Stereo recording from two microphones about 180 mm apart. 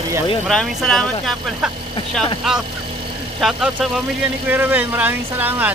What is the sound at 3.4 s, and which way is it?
Speech, centre (ahead or behind).